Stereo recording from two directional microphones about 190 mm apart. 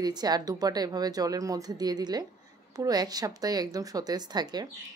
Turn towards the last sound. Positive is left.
turn(degrees=-20)  # may be behind; listen again after turning